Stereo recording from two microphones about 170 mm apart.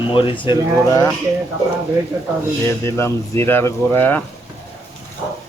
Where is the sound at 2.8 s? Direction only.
15° left (ahead or behind).